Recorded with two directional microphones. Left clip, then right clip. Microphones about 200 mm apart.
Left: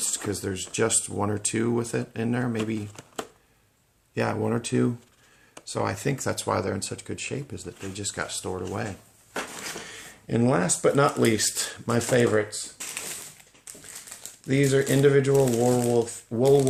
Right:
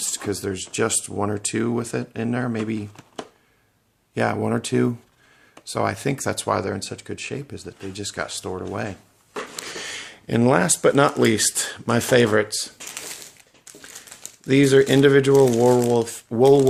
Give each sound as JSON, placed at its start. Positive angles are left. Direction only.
{"t": 0.0, "sound": "speech", "side_deg": -25}
{"t": 4.1, "sound": "speech", "side_deg": -30}
{"t": 9.8, "sound": "speech", "side_deg": -45}
{"t": 14.2, "sound": "speech", "side_deg": -40}